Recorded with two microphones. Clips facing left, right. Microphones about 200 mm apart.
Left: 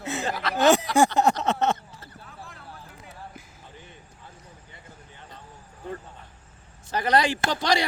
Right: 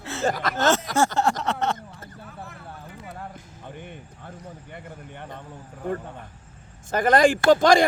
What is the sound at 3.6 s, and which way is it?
Basketball bounce, 60° right (ahead or behind).